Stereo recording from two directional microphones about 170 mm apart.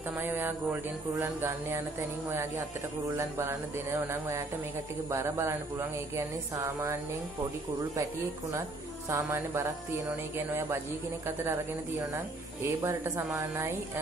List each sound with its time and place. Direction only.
0.2 s speech: 10° right (ahead or behind)
9.1 s speech: 15° right (ahead or behind)
12.6 s speech: 20° right (ahead or behind)